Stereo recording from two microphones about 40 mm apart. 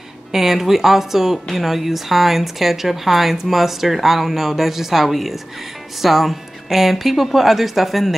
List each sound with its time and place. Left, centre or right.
0.3 s a woman's voice: centre